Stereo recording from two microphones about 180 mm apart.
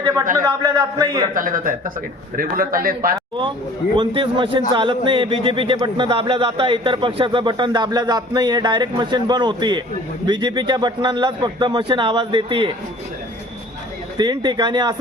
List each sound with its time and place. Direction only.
0.4 s speech: 20° right (ahead or behind)
1.3 s a man's voice: 50° right (ahead or behind)
3.9 s speech: 30° right (ahead or behind)
14.2 s speech: 25° right (ahead or behind)